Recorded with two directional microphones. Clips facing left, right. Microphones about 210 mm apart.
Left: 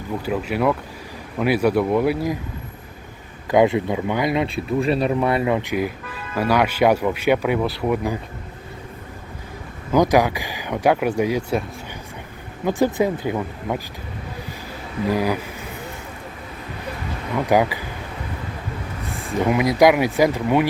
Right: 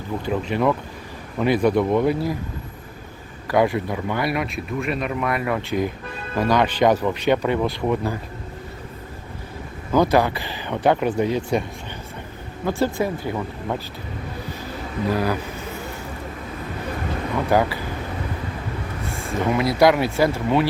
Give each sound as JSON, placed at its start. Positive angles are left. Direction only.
{"t": 0.3, "sound": "speech", "side_deg": 5}
{"t": 3.5, "sound": "speech", "side_deg": 20}
{"t": 4.4, "sound": "speech", "side_deg": 30}
{"t": 9.9, "sound": "speech", "side_deg": 15}
{"t": 12.6, "sound": "speech", "side_deg": 20}
{"t": 15.1, "sound": "speech", "side_deg": 10}
{"t": 17.5, "sound": "speech", "side_deg": 15}
{"t": 19.2, "sound": "speech", "side_deg": 15}